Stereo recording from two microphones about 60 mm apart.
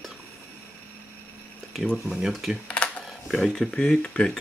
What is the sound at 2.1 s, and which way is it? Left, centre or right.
Speech, centre.